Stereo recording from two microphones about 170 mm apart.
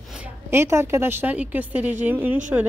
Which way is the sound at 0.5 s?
15° right (ahead or behind).